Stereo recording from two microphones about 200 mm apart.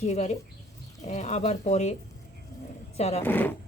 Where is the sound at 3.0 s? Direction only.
35° left (ahead or behind).